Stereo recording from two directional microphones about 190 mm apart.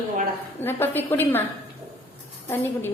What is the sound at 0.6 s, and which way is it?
Speech, 10° left (ahead or behind).